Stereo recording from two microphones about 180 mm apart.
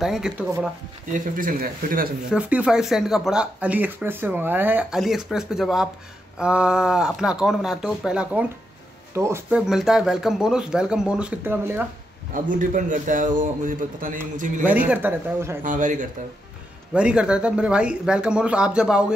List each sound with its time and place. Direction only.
0.0 s speech: centre (ahead or behind)
1.3 s a man's voice: 50° right (ahead or behind)
2.3 s speech: 5° right (ahead or behind)
9.7 s speech: 5° right (ahead or behind)
12.4 s a man's voice: 45° right (ahead or behind)
14.6 s speech: 10° right (ahead or behind)
15.6 s a man's voice: 45° right (ahead or behind)
16.9 s speech: 5° right (ahead or behind)